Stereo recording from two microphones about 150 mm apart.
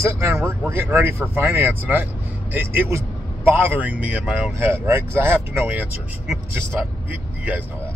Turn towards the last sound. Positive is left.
turn(degrees=-10)  # may be behind; listen again after turning